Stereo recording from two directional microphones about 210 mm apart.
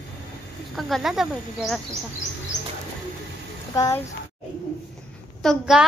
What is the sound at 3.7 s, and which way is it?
Speech, 15° left (ahead or behind).